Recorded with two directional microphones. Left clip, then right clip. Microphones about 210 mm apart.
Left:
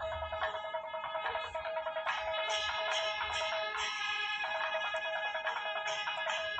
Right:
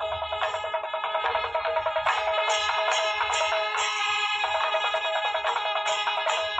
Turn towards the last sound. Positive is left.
turn(degrees=-40)  # may be behind; listen again after turning